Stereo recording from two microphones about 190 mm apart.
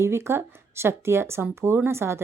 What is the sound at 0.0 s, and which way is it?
A woman's voice, 15° right (ahead or behind).